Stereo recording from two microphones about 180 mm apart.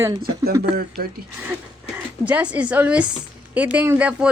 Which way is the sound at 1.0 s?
60° right (ahead or behind).